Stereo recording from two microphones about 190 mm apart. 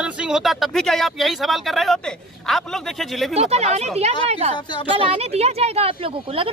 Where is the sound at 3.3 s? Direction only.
35° right (ahead or behind).